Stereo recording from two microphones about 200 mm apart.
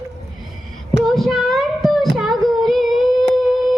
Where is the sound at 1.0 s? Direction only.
Centre (ahead or behind).